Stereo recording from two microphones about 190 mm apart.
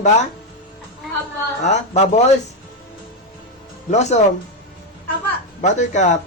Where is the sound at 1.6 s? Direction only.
35° left (ahead or behind).